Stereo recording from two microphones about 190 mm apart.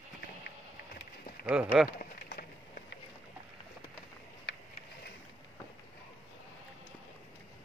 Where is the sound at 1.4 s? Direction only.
5° right (ahead or behind).